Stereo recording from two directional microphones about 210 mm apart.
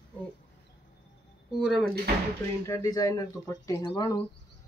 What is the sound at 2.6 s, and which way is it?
Speech, 15° left (ahead or behind).